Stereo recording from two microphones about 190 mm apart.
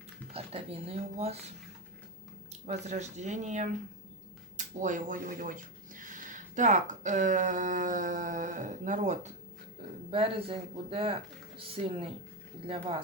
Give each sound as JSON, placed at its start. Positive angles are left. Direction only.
{"t": 0.3, "sound": "speech", "side_deg": -30}
{"t": 2.5, "sound": "speech", "side_deg": -35}